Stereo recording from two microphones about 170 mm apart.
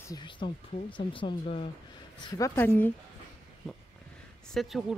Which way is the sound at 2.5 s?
10° left (ahead or behind).